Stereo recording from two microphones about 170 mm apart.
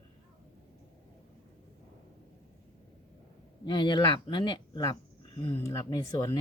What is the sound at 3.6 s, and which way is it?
Speech, 25° left (ahead or behind).